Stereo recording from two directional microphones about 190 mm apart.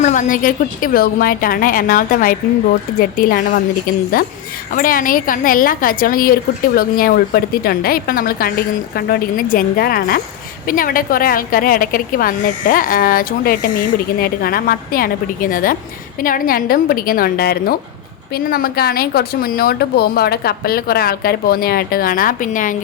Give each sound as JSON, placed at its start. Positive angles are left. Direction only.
{"t": 0.0, "sound": "a woman's voice", "side_deg": 40}